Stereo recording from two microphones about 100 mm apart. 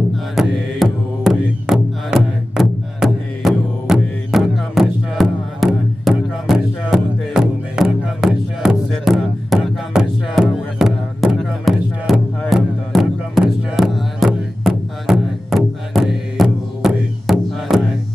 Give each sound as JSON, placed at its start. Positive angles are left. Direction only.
{"t": 0.1, "sound": "music", "side_deg": 0}